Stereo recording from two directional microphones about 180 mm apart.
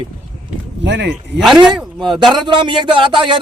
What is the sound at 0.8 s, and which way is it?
Speech, 75° right (ahead or behind).